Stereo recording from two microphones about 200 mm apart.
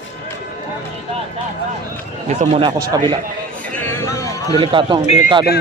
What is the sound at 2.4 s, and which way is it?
Speech, 30° right (ahead or behind).